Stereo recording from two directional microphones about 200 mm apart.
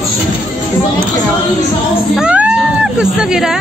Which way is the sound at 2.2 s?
5° right (ahead or behind).